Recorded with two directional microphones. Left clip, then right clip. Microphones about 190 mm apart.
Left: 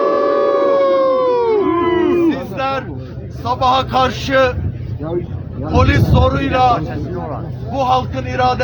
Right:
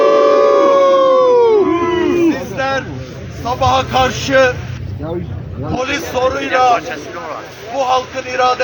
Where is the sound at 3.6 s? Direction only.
15° left (ahead or behind).